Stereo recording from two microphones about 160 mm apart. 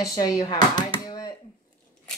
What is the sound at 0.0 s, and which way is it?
Speech, 25° left (ahead or behind).